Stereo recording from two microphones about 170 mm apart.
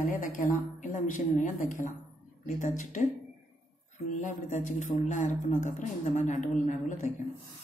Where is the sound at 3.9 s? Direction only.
45° left (ahead or behind).